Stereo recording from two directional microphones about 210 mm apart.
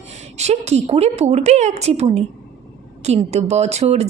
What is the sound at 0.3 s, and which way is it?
A woman's voice, 30° right (ahead or behind).